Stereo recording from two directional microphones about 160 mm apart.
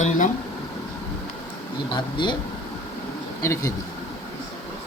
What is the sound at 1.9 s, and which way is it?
Speech, 30° left (ahead or behind).